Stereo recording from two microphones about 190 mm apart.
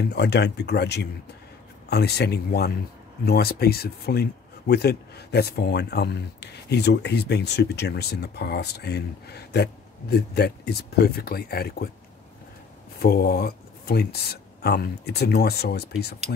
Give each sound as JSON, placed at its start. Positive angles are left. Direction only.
{"t": 0.0, "sound": "speech", "side_deg": 60}
{"t": 13.0, "sound": "speech", "side_deg": 55}